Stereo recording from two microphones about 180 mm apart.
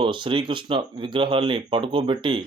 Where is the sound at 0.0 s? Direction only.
30° right (ahead or behind).